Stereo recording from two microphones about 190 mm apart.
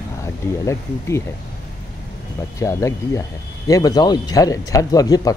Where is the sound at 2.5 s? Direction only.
15° left (ahead or behind).